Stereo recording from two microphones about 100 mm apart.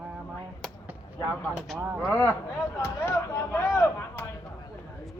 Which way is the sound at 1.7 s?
15° right (ahead or behind).